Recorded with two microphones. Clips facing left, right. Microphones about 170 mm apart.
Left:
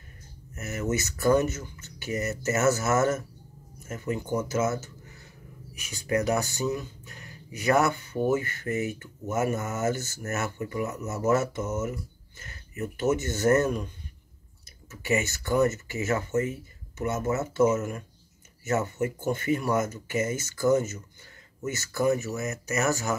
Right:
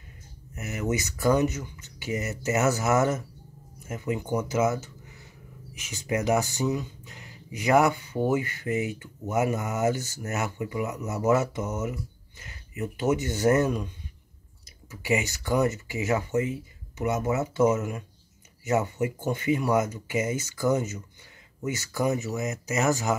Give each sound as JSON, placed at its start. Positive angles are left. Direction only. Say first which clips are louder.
{"t": 0.6, "sound": "speech", "louder": "even", "side_deg": -15}
{"t": 14.9, "sound": "speech", "louder": "even", "side_deg": -15}